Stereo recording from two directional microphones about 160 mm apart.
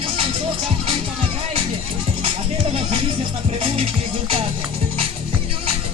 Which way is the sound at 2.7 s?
35° right (ahead or behind).